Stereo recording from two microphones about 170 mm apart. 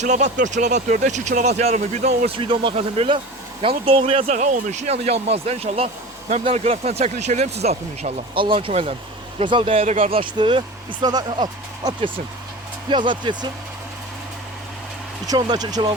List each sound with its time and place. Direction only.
0.0 s speech: 45° right (ahead or behind)
2.2 s speech: 30° right (ahead or behind)
15.3 s speech: 25° right (ahead or behind)